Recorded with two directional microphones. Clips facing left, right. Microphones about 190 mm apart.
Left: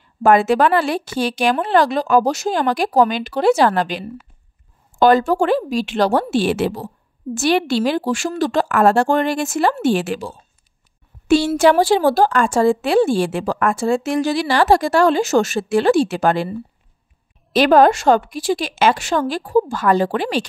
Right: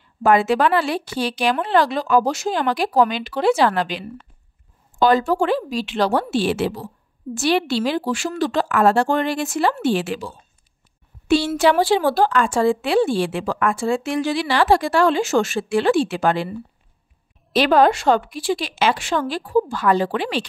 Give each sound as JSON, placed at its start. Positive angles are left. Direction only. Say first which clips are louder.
{"t": 0.2, "sound": "a woman's voice", "louder": "left 3 dB", "side_deg": 45}
{"t": 17.6, "sound": "a woman's voice", "louder": "left 3 dB", "side_deg": 45}